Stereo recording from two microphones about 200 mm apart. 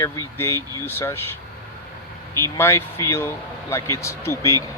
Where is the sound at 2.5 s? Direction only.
15° left (ahead or behind).